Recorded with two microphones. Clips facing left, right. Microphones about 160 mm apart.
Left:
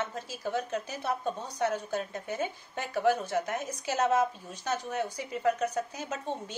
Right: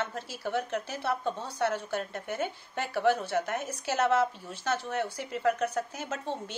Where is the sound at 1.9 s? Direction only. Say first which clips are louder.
Even; 75° right (ahead or behind).